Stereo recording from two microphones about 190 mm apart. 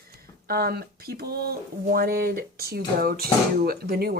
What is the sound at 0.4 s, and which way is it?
A woman's voice, 55° right (ahead or behind).